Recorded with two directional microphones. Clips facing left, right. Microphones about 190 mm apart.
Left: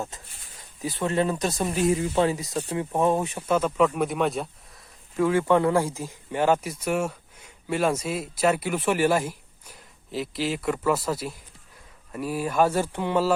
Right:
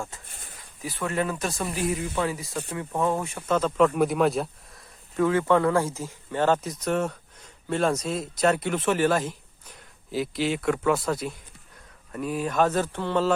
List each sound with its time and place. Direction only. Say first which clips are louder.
0.8 s speech: left 3 dB; 25° left (ahead or behind); by 5.2 s centre (ahead or behind)
5.2 s speech: even; 15° left (ahead or behind)